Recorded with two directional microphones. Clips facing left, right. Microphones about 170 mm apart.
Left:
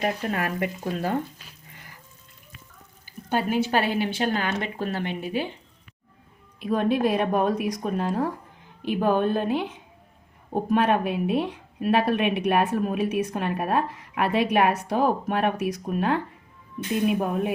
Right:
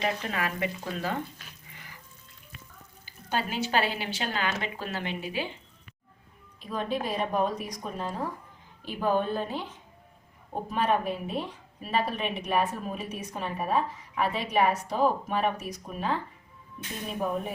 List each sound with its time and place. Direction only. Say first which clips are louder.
0.0 s speech: left 4 dB; 50° left (ahead or behind)
3.1 s a woman's voice: left 6 dB; 55° left (ahead or behind)
6.6 s a woman's voice: left 9 dB; 60° left (ahead or behind)